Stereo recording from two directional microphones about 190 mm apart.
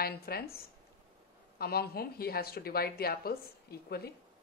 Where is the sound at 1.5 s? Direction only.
55° left (ahead or behind).